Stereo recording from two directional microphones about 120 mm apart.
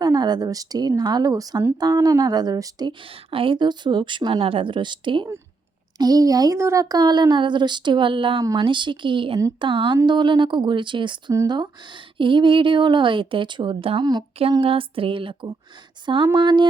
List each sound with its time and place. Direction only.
0.0 s speech: 35° right (ahead or behind)
3.0 s speech: 50° right (ahead or behind)
14.6 s speech: 50° right (ahead or behind)